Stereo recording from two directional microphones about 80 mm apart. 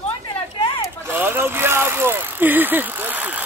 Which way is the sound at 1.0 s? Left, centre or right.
Right.